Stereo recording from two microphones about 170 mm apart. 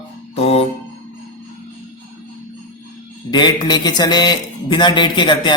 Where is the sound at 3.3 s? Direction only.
25° left (ahead or behind).